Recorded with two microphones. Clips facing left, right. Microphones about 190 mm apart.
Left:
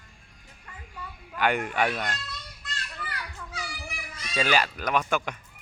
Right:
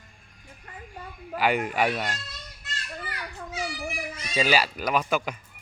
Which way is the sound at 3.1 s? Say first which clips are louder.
Right 3 dB; 25° right (ahead or behind).